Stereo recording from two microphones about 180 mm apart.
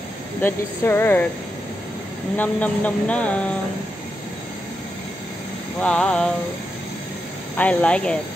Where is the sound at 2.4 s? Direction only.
10° left (ahead or behind).